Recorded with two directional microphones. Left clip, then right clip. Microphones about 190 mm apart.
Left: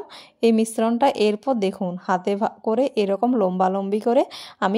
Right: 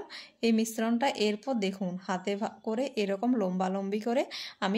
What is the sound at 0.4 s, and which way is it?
A woman's voice, 35° left (ahead or behind).